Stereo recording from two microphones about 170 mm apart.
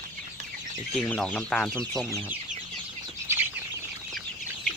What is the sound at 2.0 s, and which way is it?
Speech, 15° right (ahead or behind).